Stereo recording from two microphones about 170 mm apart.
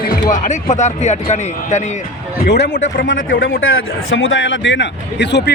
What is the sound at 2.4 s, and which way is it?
Speech, 85° left.